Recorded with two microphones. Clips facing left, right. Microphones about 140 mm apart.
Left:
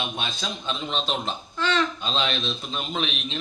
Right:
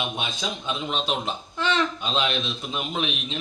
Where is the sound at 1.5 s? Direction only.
20° right (ahead or behind).